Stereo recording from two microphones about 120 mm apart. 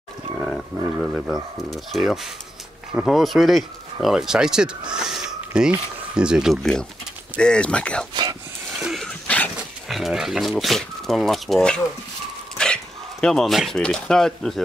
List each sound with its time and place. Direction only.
0.4 s speech: 5° left (ahead or behind)
8.1 s a sound: 35° right (ahead or behind)
8.8 s dog: centre (ahead or behind)
9.8 s speech: centre (ahead or behind)